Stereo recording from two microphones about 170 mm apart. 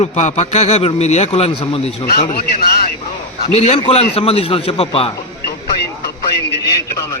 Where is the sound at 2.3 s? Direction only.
65° left (ahead or behind).